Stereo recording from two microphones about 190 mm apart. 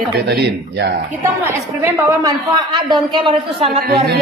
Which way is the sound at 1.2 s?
10° right (ahead or behind).